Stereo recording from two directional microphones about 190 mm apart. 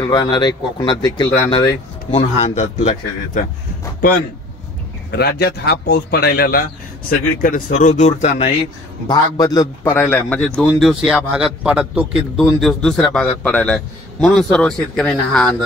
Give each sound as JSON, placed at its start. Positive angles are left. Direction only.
{"t": 0.0, "sound": "speech", "side_deg": 20}
{"t": 5.1, "sound": "speech", "side_deg": 60}
{"t": 9.0, "sound": "a man's voice", "side_deg": 20}